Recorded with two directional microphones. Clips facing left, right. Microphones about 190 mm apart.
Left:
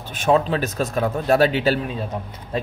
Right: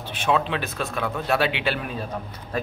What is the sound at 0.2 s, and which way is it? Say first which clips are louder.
A man's voice: left 5 dB; 40° left (ahead or behind).